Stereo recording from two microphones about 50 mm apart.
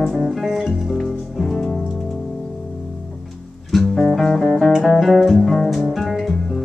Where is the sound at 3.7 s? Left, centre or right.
Centre.